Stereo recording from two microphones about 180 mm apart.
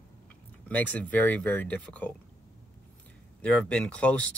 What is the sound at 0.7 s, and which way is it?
Speech, 10° left (ahead or behind).